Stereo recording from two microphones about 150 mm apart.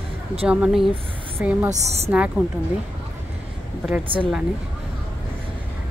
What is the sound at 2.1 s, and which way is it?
Speech, 10° right (ahead or behind).